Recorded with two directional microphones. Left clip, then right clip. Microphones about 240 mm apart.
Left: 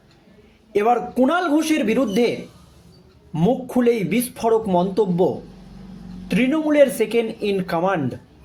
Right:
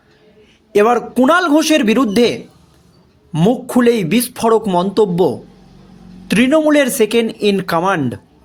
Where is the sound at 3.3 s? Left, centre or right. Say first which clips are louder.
Right 5 dB; right.